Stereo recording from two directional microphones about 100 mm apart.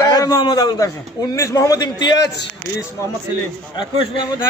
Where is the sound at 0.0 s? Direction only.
40° left (ahead or behind).